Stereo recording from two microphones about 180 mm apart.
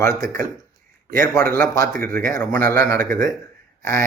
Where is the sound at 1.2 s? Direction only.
15° left (ahead or behind).